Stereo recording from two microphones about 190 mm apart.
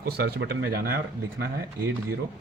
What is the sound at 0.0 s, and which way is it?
Speech, 55° right (ahead or behind).